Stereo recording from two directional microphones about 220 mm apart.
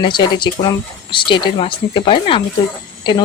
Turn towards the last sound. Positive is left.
turn(degrees=20)  # may be behind; listen again after turning